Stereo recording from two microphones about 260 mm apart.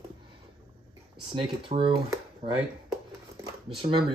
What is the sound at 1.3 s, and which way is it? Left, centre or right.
Speech, centre.